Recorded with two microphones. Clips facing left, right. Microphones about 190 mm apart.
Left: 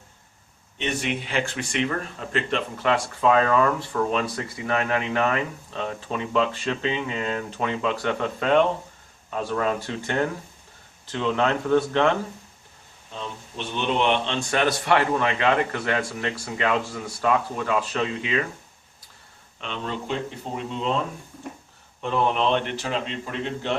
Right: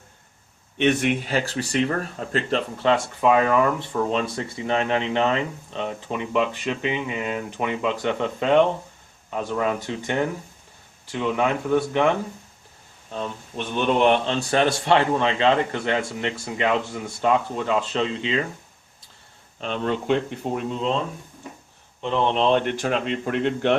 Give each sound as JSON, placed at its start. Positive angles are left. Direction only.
{"t": 0.8, "sound": "speech", "side_deg": -55}
{"t": 2.8, "sound": "speech", "side_deg": -20}
{"t": 13.1, "sound": "speech", "side_deg": -50}
{"t": 19.5, "sound": "speech", "side_deg": -45}
{"t": 22.0, "sound": "speech", "side_deg": -25}
{"t": 22.5, "sound": "speech", "side_deg": -50}